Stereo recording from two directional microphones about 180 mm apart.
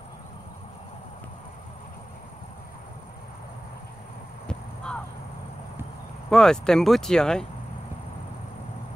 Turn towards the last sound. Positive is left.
turn(degrees=5)  # may be behind; listen again after turning